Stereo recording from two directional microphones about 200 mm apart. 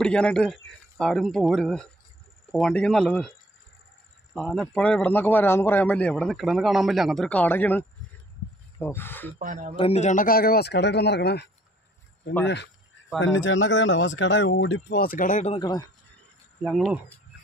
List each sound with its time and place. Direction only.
0.0 s a man's voice: 5° left (ahead or behind)
9.4 s speech: 40° right (ahead or behind)
9.8 s speech: 30° left (ahead or behind); by 11.5 s 55° left (ahead or behind)
13.2 s speech: 70° left (ahead or behind); by 15.6 s 35° left (ahead or behind)
15.6 s speech: 20° left (ahead or behind)
16.6 s a man's voice: centre (ahead or behind)